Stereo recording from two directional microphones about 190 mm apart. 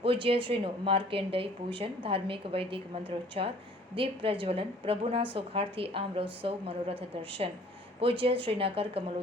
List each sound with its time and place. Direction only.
0.0 s a woman's voice: 30° right (ahead or behind)